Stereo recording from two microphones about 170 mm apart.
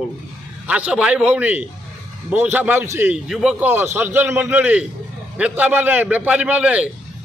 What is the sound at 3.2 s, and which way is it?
A man's voice, 5° right (ahead or behind).